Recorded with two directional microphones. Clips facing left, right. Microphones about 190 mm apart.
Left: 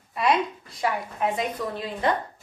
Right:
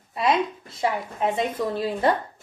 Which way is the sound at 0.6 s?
25° right (ahead or behind).